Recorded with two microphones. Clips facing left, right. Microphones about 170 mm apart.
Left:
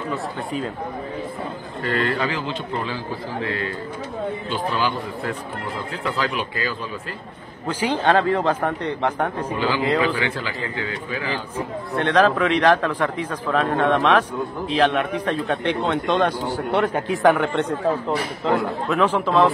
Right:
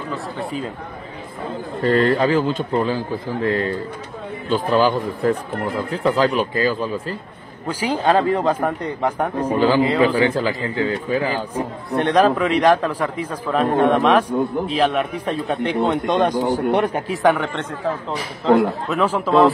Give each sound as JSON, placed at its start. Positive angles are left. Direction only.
{"t": 0.1, "sound": "speech", "side_deg": 0}
{"t": 1.8, "sound": "speech", "side_deg": -40}
{"t": 7.6, "sound": "a man's voice", "side_deg": -10}
{"t": 9.5, "sound": "speech", "side_deg": -40}
{"t": 11.9, "sound": "a man's voice", "side_deg": -15}
{"t": 17.1, "sound": "speech", "side_deg": 0}
{"t": 18.6, "sound": "speech", "side_deg": 0}